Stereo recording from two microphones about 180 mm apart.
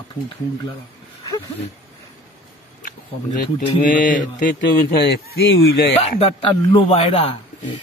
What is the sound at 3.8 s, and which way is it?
Mantra, 50° left (ahead or behind).